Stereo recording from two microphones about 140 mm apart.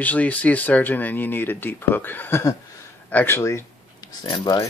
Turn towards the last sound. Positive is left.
turn(degrees=30)  # may be behind; listen again after turning